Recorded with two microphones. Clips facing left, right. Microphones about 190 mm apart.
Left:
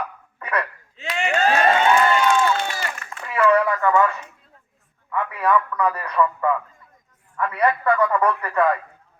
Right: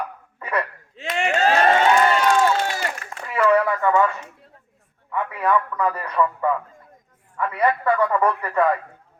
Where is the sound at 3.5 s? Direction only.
25° right (ahead or behind).